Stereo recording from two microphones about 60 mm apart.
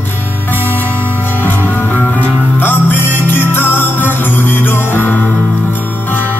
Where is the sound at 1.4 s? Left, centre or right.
Left.